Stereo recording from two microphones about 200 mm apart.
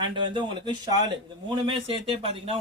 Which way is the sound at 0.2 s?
20° right (ahead or behind).